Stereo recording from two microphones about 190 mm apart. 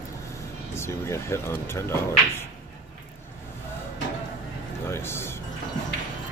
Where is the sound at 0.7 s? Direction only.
15° left (ahead or behind).